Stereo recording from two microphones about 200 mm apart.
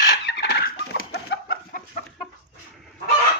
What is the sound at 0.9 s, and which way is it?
Chicken, 55° left (ahead or behind).